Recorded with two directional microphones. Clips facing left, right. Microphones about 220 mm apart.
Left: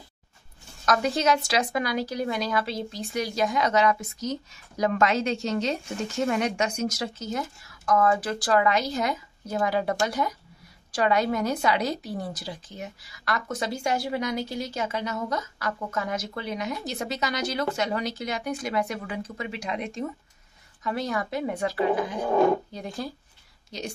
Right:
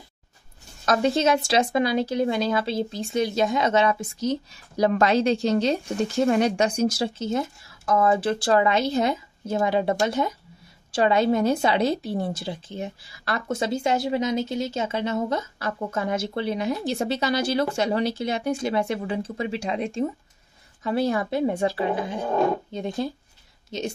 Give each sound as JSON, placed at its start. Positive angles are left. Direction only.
{"t": 0.8, "sound": "speech", "side_deg": -25}